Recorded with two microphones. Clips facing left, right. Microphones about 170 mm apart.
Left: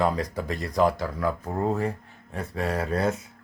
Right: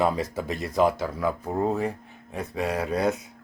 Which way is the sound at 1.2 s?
20° right (ahead or behind).